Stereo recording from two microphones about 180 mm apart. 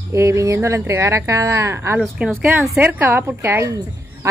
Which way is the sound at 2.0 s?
Centre (ahead or behind).